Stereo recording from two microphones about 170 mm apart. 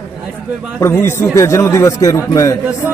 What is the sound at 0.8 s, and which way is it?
A man's voice, 15° left (ahead or behind).